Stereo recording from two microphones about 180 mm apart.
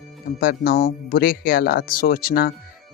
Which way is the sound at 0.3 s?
55° left (ahead or behind).